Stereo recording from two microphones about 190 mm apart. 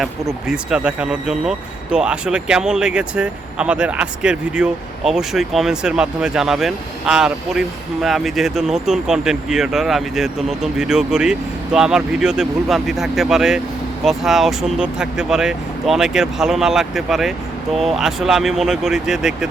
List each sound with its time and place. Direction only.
0.4 s speech: 5° right (ahead or behind)